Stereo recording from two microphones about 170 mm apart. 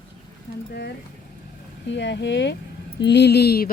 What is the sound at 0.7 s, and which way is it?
Speech, 75° left (ahead or behind).